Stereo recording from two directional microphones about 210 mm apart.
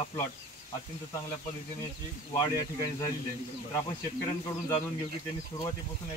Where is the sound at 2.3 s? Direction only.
20° left (ahead or behind).